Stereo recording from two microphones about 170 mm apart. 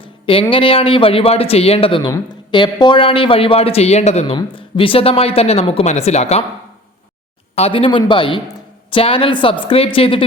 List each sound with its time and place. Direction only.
0.5 s a man's voice: 35° left (ahead or behind)
7.5 s a man's voice: 35° left (ahead or behind)